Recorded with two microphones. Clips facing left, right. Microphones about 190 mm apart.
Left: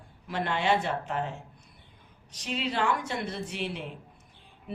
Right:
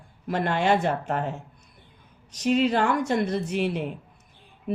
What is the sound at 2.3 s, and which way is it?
Speech, 45° right (ahead or behind).